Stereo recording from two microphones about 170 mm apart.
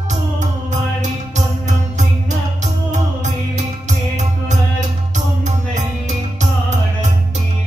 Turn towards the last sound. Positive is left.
turn(degrees=-45)  # may be behind; listen again after turning